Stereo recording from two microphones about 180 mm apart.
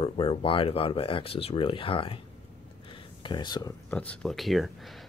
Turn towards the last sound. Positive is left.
turn(degrees=0)  # may be behind; listen again after turning